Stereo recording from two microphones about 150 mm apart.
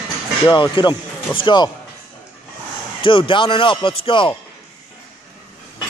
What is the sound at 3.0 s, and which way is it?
Speech, 35° left (ahead or behind).